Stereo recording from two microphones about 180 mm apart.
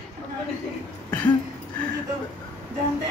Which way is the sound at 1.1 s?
10° left (ahead or behind).